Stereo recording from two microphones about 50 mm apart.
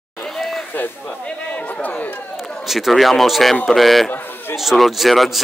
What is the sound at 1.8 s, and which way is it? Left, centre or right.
Speech, left.